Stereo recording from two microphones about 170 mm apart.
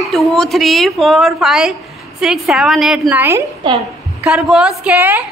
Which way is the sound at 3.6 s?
25° right (ahead or behind).